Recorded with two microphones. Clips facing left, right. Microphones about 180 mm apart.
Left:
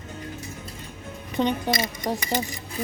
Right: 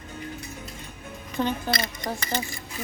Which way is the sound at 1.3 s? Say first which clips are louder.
Left 3 dB; 15° left (ahead or behind).